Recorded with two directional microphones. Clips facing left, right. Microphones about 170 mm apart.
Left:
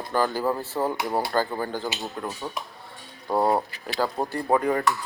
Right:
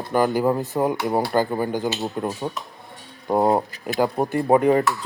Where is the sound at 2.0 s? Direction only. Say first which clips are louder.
Right 6 dB; 30° right (ahead or behind).